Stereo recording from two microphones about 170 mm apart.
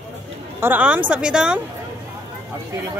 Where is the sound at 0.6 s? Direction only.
10° right (ahead or behind).